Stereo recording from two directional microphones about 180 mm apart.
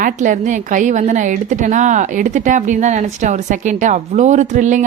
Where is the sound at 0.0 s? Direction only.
45° right (ahead or behind).